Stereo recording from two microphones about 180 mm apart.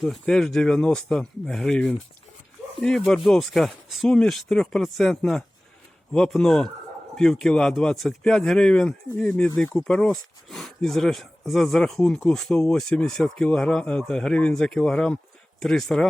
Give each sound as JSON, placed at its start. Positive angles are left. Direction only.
{"t": 0.0, "sound": "speech", "side_deg": 0}
{"t": 3.2, "sound": "speech", "side_deg": 0}